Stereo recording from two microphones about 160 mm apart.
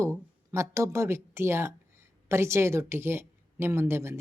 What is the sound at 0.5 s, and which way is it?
A woman's voice, 15° right (ahead or behind).